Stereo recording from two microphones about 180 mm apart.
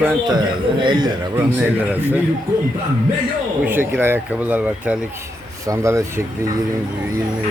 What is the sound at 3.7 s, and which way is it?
Speech, 10° right (ahead or behind).